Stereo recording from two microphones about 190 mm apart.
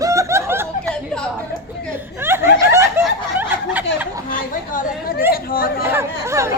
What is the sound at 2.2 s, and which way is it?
Snicker, 10° right (ahead or behind).